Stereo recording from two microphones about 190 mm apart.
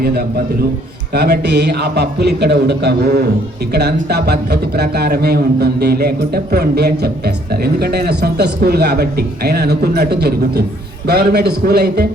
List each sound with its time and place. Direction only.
0.0 s a man's voice: 55° right (ahead or behind)